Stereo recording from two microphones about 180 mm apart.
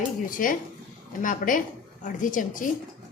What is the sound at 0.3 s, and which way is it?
A woman's voice, 50° left (ahead or behind).